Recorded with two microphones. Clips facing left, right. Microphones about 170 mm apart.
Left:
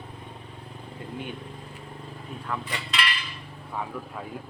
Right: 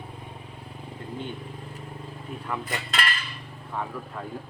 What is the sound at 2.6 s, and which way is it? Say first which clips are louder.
Cutlery: right 1 dB; 45° right (ahead or behind).